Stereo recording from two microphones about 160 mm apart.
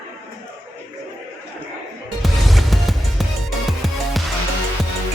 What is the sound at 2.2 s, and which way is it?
Music, centre (ahead or behind).